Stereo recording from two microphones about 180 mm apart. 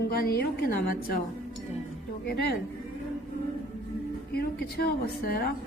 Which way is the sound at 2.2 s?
65° left (ahead or behind).